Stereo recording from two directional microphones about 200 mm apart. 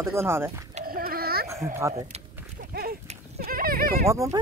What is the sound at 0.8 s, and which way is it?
Dog, 50° right (ahead or behind).